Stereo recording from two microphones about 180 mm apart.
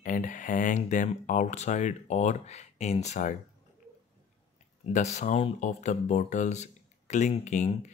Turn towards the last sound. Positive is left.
turn(degrees=40)  # may be behind; listen again after turning